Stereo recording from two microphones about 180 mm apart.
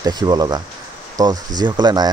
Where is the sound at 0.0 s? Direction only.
20° right (ahead or behind).